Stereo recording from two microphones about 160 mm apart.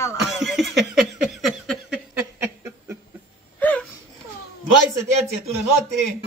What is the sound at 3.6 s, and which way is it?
Gasp, 10° left (ahead or behind).